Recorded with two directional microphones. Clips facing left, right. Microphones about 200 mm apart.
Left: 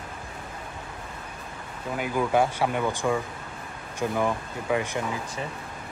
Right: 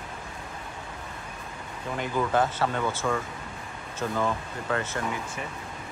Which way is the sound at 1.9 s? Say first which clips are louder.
Left 2 dB; 10° left (ahead or behind).